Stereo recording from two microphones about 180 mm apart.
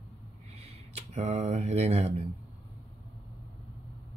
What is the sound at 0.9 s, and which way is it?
Speech, 40° right (ahead or behind).